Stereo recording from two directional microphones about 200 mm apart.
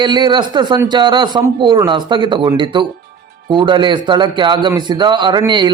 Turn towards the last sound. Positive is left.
turn(degrees=-25)  # may be behind; listen again after turning